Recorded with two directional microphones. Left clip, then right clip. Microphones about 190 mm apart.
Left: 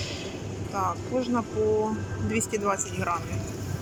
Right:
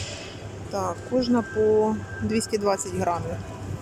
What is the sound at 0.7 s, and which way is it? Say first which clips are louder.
Speech: right 2 dB; 30° right (ahead or behind).